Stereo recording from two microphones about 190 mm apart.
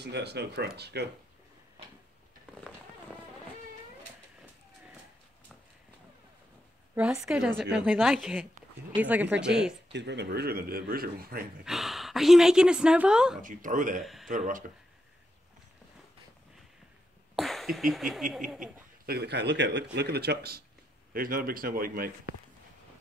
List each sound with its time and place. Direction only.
0.0 s speech: 60° right (ahead or behind)
2.5 s a sound: 5° left (ahead or behind)
7.0 s a woman's voice: 5° right (ahead or behind)
9.9 s speech: 65° right (ahead or behind)
11.6 s a woman's voice: centre (ahead or behind)
13.4 s speech: 45° right (ahead or behind)
14.0 s speech: centre (ahead or behind)
17.4 s a woman's voice: centre (ahead or behind)
19.0 s speech: 60° right (ahead or behind)